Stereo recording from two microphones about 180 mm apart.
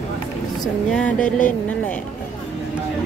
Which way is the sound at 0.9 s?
5° left (ahead or behind).